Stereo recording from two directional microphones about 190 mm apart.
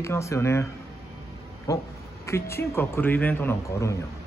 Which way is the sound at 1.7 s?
15° left (ahead or behind).